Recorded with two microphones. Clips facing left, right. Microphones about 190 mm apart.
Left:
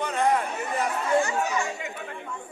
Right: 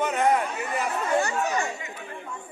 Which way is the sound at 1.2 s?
35° right (ahead or behind).